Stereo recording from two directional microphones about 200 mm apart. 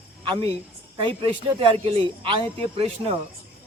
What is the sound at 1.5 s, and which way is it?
Speech, 25° right (ahead or behind).